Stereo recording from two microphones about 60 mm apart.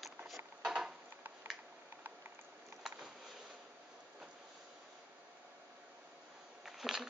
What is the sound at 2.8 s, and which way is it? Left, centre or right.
Vehicle, centre.